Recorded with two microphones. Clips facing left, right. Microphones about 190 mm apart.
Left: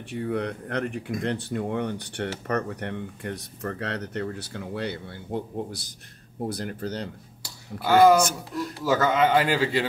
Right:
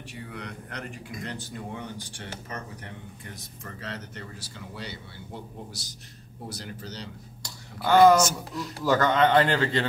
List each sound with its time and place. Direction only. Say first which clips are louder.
0.1 s speech: left 13 dB; 55° left (ahead or behind)
7.4 s speech: left 1 dB; 5° left (ahead or behind)
8.2 s speech: left 1 dB; 55° left (ahead or behind)
8.8 s speech: even; 5° left (ahead or behind)